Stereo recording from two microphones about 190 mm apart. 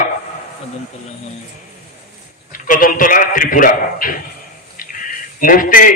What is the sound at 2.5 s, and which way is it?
A man's voice, 45° left (ahead or behind).